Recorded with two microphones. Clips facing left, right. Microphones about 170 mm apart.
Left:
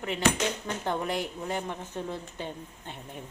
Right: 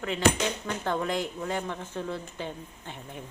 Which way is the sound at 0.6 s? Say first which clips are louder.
Right 1 dB; 15° left (ahead or behind).